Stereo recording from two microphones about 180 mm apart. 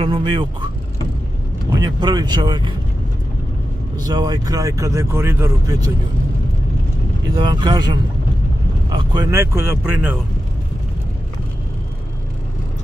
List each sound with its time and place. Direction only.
0.0 s speech: 30° right (ahead or behind)
1.7 s speech: 25° right (ahead or behind)
4.0 s speech: 20° right (ahead or behind)
7.4 s speech: 25° right (ahead or behind)